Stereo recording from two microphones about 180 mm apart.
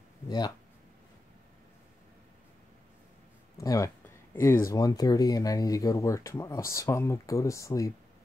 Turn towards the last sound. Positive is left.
turn(degrees=15)  # may be behind; listen again after turning